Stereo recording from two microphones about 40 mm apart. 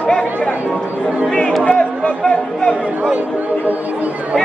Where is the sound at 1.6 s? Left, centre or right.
Left.